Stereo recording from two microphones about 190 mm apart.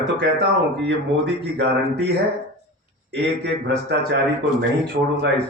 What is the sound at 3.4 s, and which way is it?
Speech, 65° right (ahead or behind).